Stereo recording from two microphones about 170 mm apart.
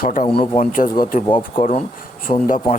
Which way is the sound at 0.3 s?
35° left (ahead or behind).